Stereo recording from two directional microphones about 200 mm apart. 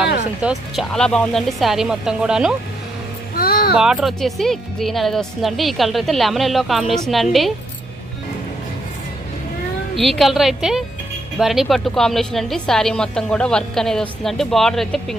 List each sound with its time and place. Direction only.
0.4 s a woman's voice: centre (ahead or behind)
3.3 s music: 50° left (ahead or behind)
3.7 s a woman's voice: 5° right (ahead or behind)
9.9 s a woman's voice: centre (ahead or behind)